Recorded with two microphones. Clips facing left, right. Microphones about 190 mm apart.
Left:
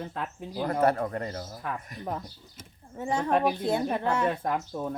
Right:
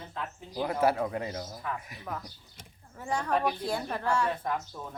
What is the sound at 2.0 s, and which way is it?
A woman's voice, 30° left (ahead or behind).